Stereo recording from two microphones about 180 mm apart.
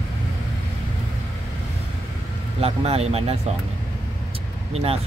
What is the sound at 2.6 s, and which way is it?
Speech, 35° right (ahead or behind).